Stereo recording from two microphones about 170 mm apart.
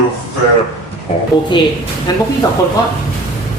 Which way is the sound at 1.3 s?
25° left (ahead or behind).